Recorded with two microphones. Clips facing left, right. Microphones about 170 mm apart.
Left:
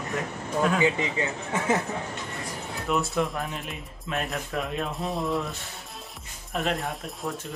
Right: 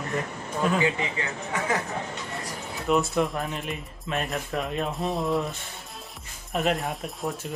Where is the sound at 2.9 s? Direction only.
Centre (ahead or behind).